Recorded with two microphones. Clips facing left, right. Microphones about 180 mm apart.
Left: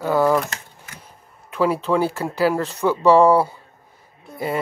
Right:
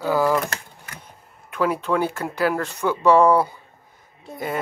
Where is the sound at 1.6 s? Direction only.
30° left (ahead or behind).